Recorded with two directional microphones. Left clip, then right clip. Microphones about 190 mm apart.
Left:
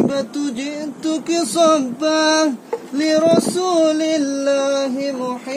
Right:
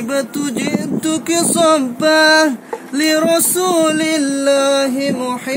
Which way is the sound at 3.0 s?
15° left (ahead or behind).